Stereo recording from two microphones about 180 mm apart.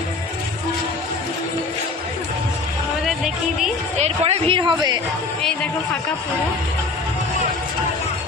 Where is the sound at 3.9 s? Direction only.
35° right (ahead or behind).